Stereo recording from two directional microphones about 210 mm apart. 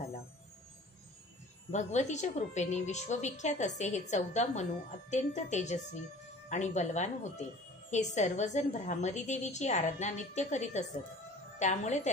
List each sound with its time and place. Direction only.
1.7 s a woman's voice: 35° left (ahead or behind)